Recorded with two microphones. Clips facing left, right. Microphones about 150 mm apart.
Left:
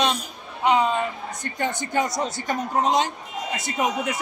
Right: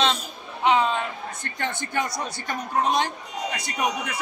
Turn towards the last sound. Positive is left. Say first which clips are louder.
# left 2 dB
turn(degrees=20)  # may be behind; listen again after turning